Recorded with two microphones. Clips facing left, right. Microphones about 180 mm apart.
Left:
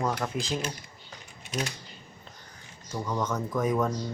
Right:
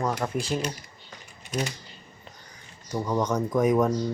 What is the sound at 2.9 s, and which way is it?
Speech, 15° right (ahead or behind).